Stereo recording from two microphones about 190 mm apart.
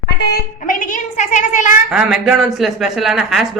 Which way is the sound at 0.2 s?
60° left (ahead or behind).